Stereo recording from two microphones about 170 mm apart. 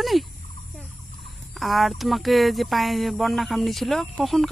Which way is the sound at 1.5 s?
Centre (ahead or behind).